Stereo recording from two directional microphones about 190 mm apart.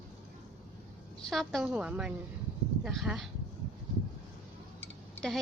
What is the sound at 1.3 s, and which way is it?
A woman's voice, centre (ahead or behind).